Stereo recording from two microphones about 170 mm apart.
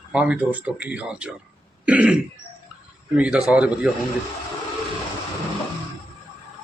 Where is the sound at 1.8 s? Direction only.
10° right (ahead or behind).